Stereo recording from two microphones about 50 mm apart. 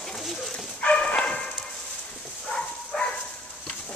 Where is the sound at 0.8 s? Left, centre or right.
Left.